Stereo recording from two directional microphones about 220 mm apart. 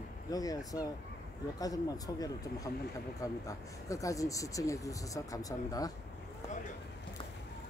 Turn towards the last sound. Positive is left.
turn(degrees=15)  # may be behind; listen again after turning